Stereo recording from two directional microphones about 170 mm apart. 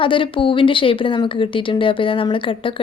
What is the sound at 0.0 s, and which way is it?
Speech, 30° left (ahead or behind).